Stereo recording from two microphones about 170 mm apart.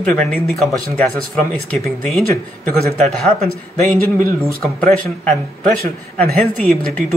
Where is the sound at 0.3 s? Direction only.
5° left (ahead or behind).